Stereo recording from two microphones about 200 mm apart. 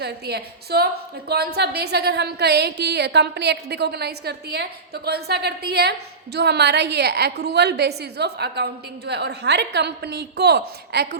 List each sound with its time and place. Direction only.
0.0 s a woman's voice: 55° right (ahead or behind)